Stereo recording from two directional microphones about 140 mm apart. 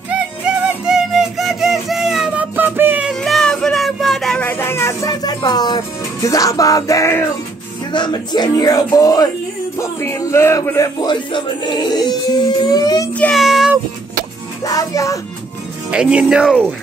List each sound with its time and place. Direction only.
0.5 s music: 5° right (ahead or behind)
3.1 s a sound: centre (ahead or behind); by 5.8 s 30° left (ahead or behind)
6.2 s music: 25° left (ahead or behind)
7.9 s music: 30° left (ahead or behind)
11.0 s music: 35° left (ahead or behind)
13.1 s child singing: 10° left (ahead or behind)
13.4 s meow: centre (ahead or behind)
14.6 s music: 25° left (ahead or behind)
15.9 s speech: 5° right (ahead or behind)